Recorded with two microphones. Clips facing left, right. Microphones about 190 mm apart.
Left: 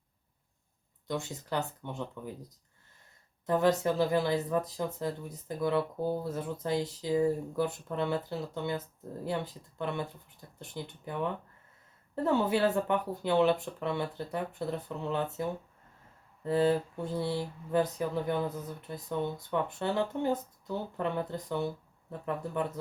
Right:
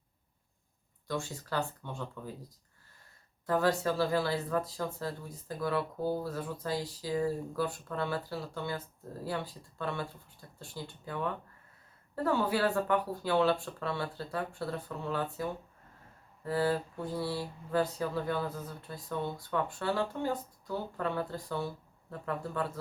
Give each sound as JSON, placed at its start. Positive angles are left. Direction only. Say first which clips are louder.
{"t": 1.0, "sound": "speech", "louder": "left 1 dB", "side_deg": 20}
{"t": 3.4, "sound": "speech", "louder": "left 2 dB", "side_deg": 20}